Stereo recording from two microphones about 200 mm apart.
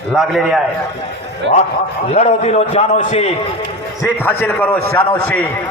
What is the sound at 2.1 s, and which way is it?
A man's voice, 35° left (ahead or behind).